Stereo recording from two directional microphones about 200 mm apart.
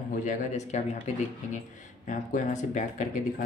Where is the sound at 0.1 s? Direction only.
35° left (ahead or behind).